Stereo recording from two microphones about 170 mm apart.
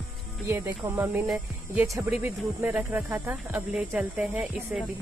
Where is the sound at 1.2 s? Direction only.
5° right (ahead or behind).